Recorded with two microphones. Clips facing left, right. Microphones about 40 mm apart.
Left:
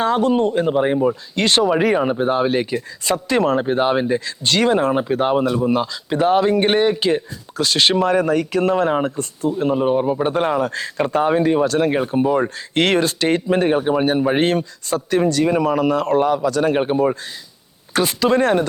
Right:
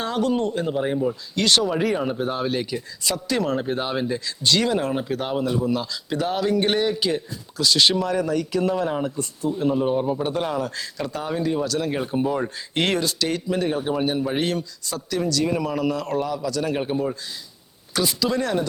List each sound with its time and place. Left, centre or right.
0.0 s speech: left
11.9 s speech: centre
12.4 s speech: left